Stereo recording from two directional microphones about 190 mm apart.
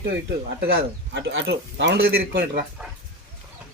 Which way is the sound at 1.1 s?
70° right (ahead or behind).